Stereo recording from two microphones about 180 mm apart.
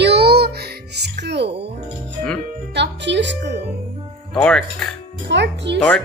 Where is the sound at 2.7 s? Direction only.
75° right (ahead or behind).